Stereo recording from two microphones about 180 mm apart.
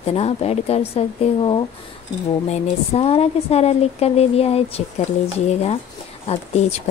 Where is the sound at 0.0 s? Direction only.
35° left (ahead or behind).